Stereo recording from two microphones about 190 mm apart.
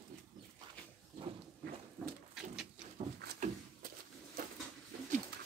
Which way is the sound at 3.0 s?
30° right (ahead or behind).